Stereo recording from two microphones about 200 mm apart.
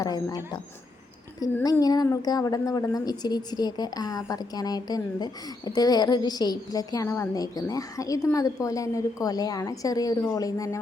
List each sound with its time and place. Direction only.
0.0 s a woman's voice: 15° left (ahead or behind)